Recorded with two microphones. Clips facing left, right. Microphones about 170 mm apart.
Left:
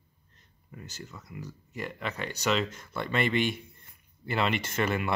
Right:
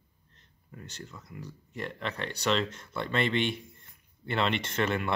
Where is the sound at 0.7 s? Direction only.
5° left (ahead or behind).